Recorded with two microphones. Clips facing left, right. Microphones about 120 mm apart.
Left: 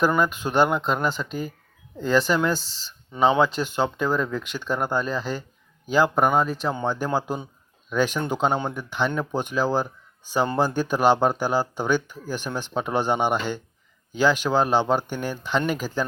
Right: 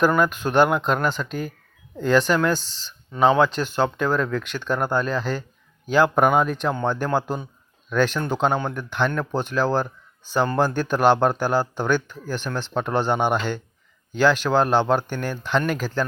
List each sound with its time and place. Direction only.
0.0 s speech: 10° left (ahead or behind)
2.6 s speech: 40° left (ahead or behind)
3.1 s speech: 10° left (ahead or behind)